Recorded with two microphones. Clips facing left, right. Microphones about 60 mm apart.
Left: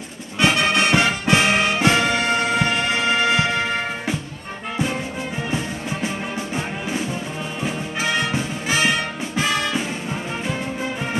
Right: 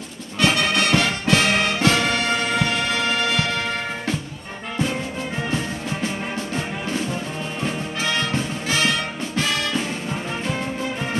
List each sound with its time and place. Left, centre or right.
0.4 s music: centre
5.5 s music: centre